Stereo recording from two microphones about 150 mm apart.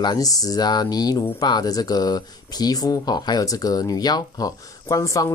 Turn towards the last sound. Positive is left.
turn(degrees=20)  # may be behind; listen again after turning